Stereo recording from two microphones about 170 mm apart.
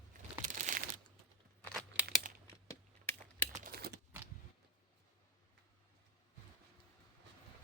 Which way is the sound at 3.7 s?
70° right (ahead or behind).